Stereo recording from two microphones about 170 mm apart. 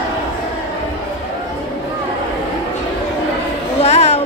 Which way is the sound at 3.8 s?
40° left (ahead or behind).